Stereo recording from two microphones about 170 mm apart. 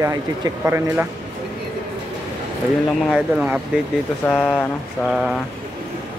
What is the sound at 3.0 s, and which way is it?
Speech, centre (ahead or behind).